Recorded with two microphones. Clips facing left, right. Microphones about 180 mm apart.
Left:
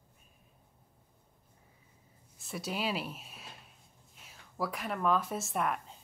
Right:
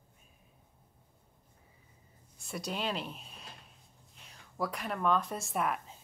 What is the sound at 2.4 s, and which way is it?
Speech, centre (ahead or behind).